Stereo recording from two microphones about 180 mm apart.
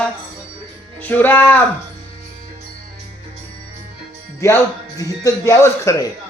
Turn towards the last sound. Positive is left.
turn(degrees=15)  # may be behind; listen again after turning